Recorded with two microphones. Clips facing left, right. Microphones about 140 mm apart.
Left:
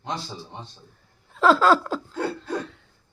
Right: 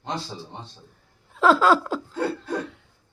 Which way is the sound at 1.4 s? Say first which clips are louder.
Even; 10° right (ahead or behind).